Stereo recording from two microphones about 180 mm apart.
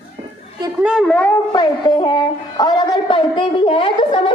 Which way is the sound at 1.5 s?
25° left (ahead or behind).